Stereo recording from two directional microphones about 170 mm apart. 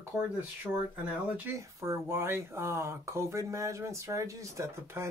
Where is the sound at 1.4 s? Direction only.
15° right (ahead or behind).